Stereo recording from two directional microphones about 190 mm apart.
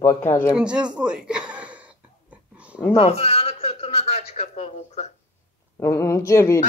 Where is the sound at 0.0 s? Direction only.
15° left (ahead or behind).